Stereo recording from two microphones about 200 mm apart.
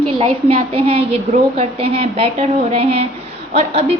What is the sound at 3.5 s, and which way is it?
Speech, 30° right (ahead or behind).